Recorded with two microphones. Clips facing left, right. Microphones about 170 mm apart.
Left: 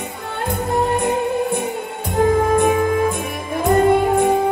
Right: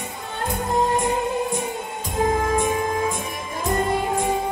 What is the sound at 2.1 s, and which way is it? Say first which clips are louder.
Music: left 6 dB; 60° left (ahead or behind).